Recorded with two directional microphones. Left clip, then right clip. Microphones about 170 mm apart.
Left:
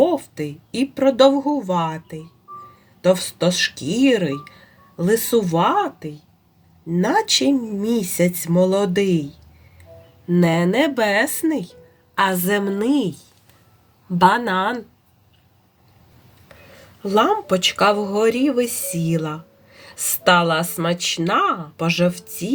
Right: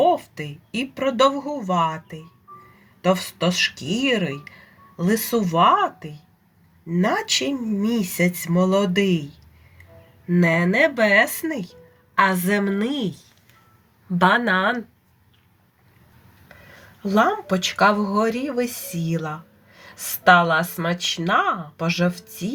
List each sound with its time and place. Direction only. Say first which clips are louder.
0.0 s speech: left 1 dB; 45° left (ahead or behind)
6.9 s speech: left 3 dB; 45° left (ahead or behind)
10.2 s speech: left 1 dB; 45° left (ahead or behind)
14.2 s speech: left 2 dB; 35° left (ahead or behind)
17.1 s speech: left 3 dB; 40° left (ahead or behind)
20.4 s speech: left 1 dB; 45° left (ahead or behind)